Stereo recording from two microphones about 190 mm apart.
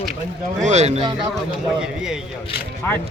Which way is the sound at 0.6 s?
35° right (ahead or behind).